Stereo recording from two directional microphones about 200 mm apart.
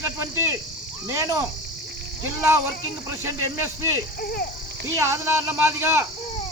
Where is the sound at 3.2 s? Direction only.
10° right (ahead or behind).